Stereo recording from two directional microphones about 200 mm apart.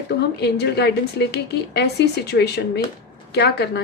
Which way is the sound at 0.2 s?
55° left (ahead or behind).